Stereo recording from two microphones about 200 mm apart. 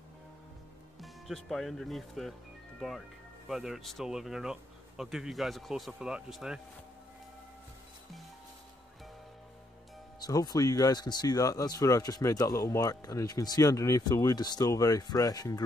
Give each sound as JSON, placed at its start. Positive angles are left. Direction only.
{"t": 1.0, "sound": "speech", "side_deg": 0}
{"t": 10.2, "sound": "speech", "side_deg": 20}